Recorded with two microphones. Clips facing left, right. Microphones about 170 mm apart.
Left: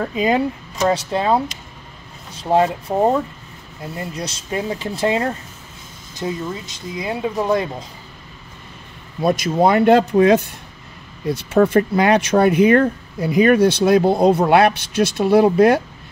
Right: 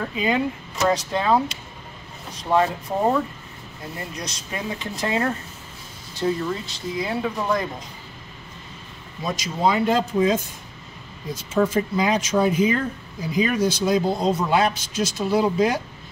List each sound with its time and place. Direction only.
0.0 s speech: 40° left (ahead or behind)
4.2 s speech: 30° left (ahead or behind)
6.2 s speech: 15° left (ahead or behind)
9.2 s speech: 60° left (ahead or behind)